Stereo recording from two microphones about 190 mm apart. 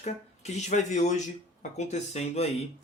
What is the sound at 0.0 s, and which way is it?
Speech, 35° left (ahead or behind).